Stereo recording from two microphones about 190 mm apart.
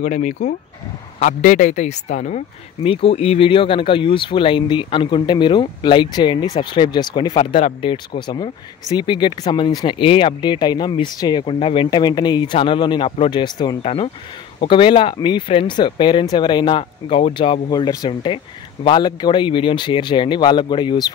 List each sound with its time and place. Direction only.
0.0 s speech: 40° left (ahead or behind); by 21.1 s 25° left (ahead or behind)